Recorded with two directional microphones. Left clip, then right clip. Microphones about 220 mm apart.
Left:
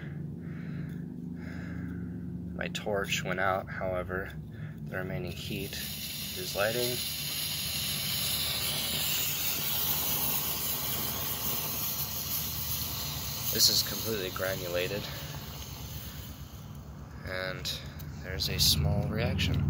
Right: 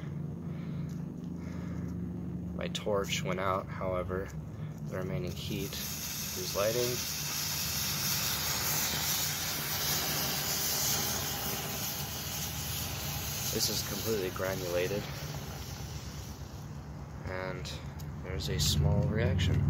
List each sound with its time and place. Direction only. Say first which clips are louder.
2.6 s speech: even; 15° right (ahead or behind)
6.3 s a sound: left 1 dB; 20° right (ahead or behind)
9.8 s vehicle: right 1 dB; 20° right (ahead or behind)
12.6 s speech: left 1 dB; 15° right (ahead or behind)
17.3 s speech: left 4 dB; 10° right (ahead or behind)